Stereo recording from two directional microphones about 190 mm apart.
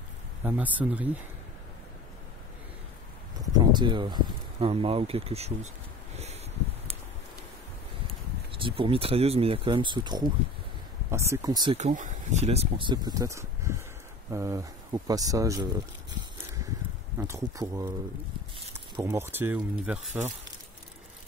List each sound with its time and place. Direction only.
0.4 s speech: 10° right (ahead or behind)
3.5 s speech: 25° right (ahead or behind)
6.1 s a sound: 35° right (ahead or behind)
8.5 s speech: 25° right (ahead or behind)
11.7 s speech: 40° right (ahead or behind); by 15.7 s 15° right (ahead or behind)
17.2 s speech: 15° right (ahead or behind)
18.9 s speech: 15° right (ahead or behind)